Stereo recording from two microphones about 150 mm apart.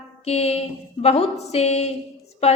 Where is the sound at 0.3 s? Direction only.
45° left (ahead or behind).